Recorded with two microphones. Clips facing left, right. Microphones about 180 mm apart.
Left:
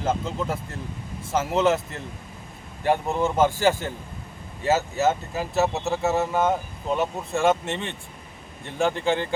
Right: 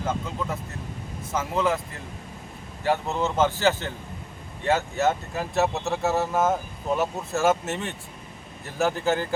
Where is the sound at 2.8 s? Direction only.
15° left (ahead or behind).